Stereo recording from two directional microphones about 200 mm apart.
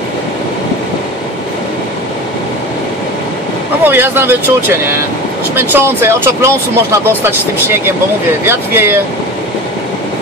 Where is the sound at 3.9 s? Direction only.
10° right (ahead or behind).